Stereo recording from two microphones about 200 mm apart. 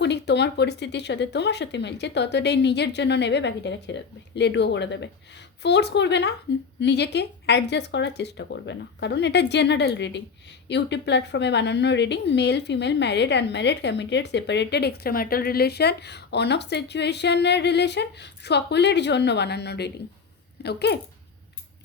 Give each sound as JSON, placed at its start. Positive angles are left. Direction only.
{"t": 0.0, "sound": "a woman's voice", "side_deg": 60}